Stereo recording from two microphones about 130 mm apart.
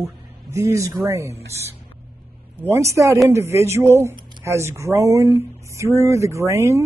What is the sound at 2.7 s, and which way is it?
Speech, 25° right (ahead or behind).